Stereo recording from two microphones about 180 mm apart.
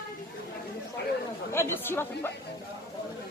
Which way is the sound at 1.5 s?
15° left (ahead or behind).